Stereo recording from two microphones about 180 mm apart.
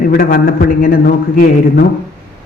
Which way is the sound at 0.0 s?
55° left (ahead or behind).